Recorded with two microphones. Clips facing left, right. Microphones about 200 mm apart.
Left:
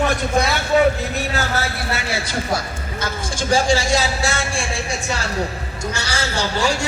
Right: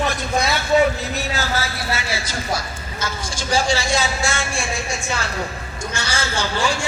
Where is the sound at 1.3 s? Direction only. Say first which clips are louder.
Left 1 dB; 55° left (ahead or behind).